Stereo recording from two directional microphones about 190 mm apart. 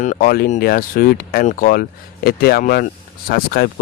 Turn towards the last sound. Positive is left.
turn(degrees=55)  # may be behind; listen again after turning